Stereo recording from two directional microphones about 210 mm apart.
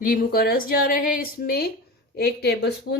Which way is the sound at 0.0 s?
45° left (ahead or behind).